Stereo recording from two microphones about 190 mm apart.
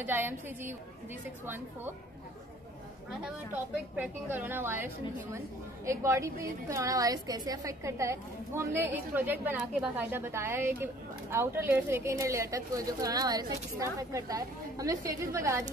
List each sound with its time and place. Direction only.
0.0 s a woman's voice: 10° right (ahead or behind)
3.9 s a woman's voice: 10° right (ahead or behind)